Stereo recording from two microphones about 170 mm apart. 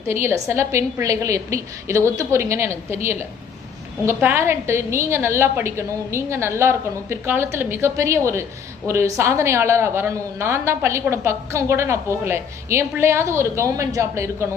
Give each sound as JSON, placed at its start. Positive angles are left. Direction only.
{"t": 0.1, "sound": "a woman's voice", "side_deg": -15}